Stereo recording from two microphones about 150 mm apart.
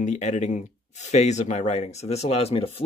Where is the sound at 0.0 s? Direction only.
50° left (ahead or behind).